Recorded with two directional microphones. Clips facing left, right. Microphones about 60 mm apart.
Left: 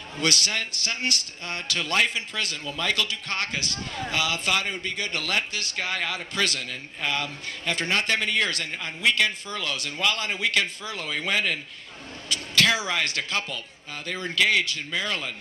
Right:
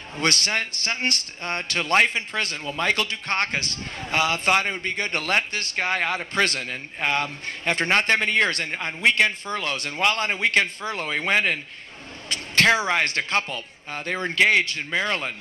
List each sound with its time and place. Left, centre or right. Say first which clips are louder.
0.2 s a man's voice: right 3 dB; right